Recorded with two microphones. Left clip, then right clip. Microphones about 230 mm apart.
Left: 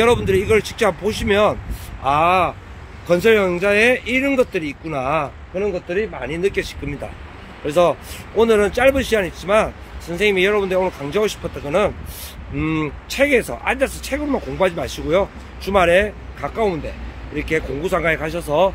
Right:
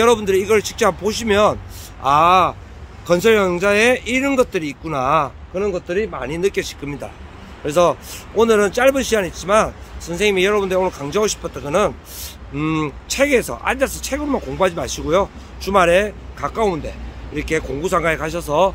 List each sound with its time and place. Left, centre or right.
0.0 s speech: centre